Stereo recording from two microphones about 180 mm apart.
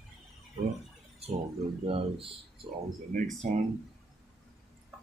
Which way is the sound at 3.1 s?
45° right (ahead or behind).